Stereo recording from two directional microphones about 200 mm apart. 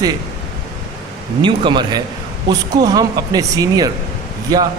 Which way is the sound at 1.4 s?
20° right (ahead or behind).